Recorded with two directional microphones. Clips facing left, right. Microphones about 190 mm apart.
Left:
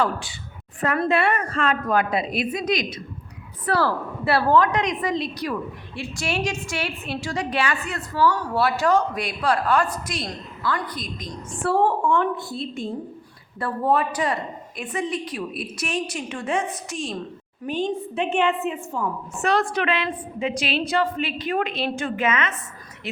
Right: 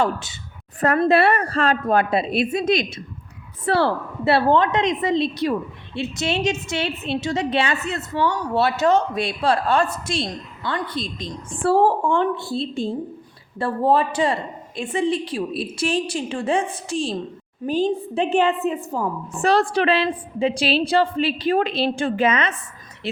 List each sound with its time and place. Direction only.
0.0 s a woman's voice: 20° right (ahead or behind)
1.0 s a woman's voice: 35° right (ahead or behind)